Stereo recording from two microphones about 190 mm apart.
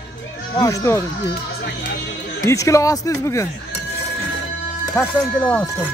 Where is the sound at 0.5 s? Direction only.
15° left (ahead or behind).